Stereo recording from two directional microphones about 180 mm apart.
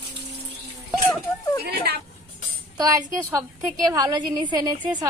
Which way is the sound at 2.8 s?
20° right (ahead or behind).